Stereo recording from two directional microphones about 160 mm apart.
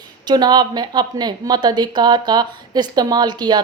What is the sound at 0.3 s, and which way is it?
A woman's voice, 25° right (ahead or behind).